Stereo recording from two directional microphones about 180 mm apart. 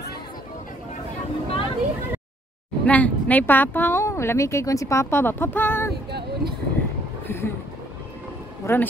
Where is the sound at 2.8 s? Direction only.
10° left (ahead or behind).